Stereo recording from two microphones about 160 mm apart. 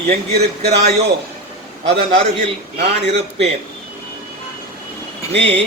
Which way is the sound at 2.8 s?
90° right.